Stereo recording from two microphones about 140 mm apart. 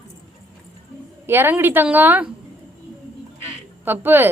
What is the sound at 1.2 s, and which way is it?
A woman's voice, 15° right (ahead or behind).